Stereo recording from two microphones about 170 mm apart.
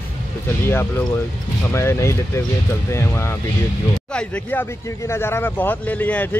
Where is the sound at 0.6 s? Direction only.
15° left (ahead or behind).